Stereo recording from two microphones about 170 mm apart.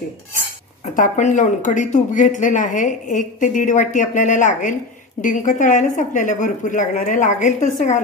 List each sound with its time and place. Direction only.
0.9 s speech: 50° left (ahead or behind)